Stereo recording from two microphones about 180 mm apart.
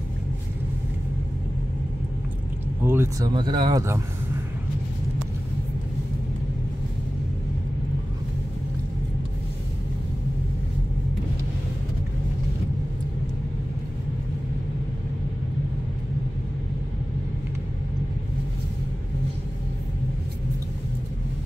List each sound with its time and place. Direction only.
2.8 s speech: 15° right (ahead or behind)
3.3 s speech: 25° right (ahead or behind)